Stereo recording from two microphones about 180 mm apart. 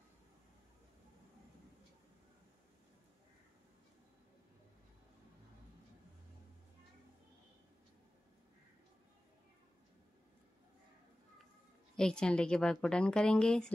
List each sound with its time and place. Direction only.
12.0 s a woman's voice: 5° left (ahead or behind)